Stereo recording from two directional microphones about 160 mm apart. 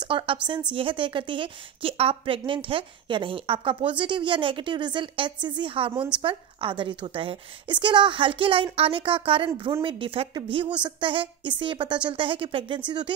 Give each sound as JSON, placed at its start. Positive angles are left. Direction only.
{"t": 0.0, "sound": "a woman's voice", "side_deg": -30}